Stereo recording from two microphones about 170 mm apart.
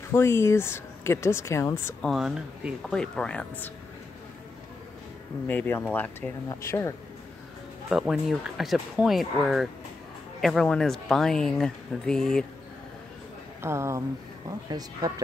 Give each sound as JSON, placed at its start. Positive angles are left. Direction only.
{"t": 0.1, "sound": "speech", "side_deg": 15}
{"t": 2.0, "sound": "speech", "side_deg": 0}
{"t": 5.5, "sound": "speech", "side_deg": 10}
{"t": 7.9, "sound": "speech", "side_deg": 0}
{"t": 13.6, "sound": "a woman's voice", "side_deg": -15}